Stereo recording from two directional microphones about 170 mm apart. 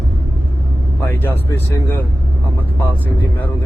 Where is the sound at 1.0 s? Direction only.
15° left (ahead or behind).